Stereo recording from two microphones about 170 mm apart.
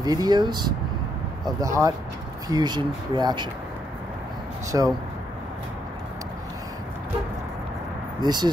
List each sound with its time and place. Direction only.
0.0 s speech: 25° right (ahead or behind)
4.6 s speech: 20° right (ahead or behind)
8.2 s speech: 25° right (ahead or behind)